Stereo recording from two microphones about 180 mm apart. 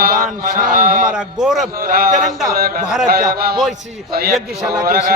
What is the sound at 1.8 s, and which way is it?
A man's voice, 55° right (ahead or behind).